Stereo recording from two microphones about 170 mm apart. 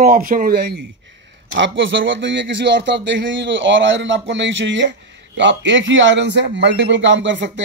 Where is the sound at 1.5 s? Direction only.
90° right.